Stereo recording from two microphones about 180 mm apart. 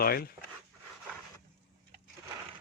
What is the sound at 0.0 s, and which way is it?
Speech, 55° left (ahead or behind).